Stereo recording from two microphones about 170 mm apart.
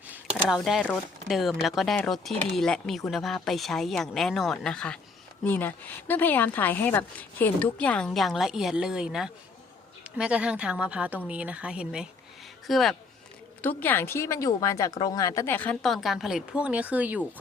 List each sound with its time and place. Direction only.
0.4 s speech: centre (ahead or behind)